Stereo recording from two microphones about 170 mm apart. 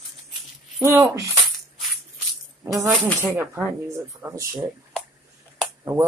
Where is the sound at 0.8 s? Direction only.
20° right (ahead or behind).